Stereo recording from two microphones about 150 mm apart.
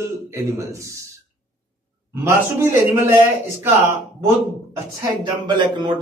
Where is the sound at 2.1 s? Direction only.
15° right (ahead or behind).